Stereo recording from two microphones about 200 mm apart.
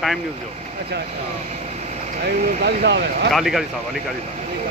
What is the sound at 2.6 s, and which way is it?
Speech, 55° right (ahead or behind).